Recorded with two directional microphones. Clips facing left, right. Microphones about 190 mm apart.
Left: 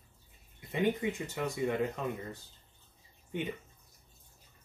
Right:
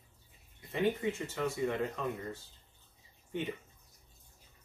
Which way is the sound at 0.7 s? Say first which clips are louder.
Left 1 dB; 15° left (ahead or behind).